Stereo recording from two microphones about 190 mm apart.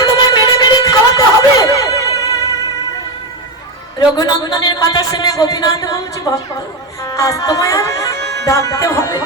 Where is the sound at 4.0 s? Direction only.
20° left (ahead or behind).